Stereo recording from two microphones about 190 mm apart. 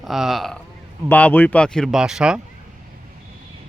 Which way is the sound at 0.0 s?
Centre (ahead or behind).